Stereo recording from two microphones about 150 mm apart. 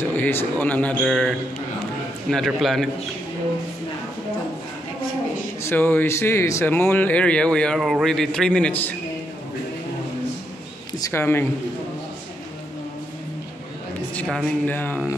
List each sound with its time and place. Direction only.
0.1 s speech: 15° left (ahead or behind)
2.3 s a man's voice: centre (ahead or behind)
5.6 s speech: 15° left (ahead or behind)
11.0 s speech: 20° left (ahead or behind)
14.1 s speech: 10° left (ahead or behind)